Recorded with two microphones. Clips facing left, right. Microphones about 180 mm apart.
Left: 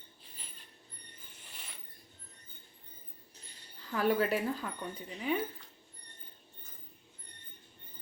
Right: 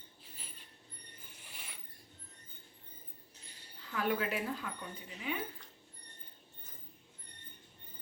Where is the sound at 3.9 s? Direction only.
40° left (ahead or behind).